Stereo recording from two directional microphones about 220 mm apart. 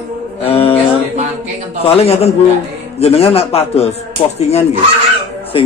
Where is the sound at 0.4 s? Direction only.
25° left (ahead or behind).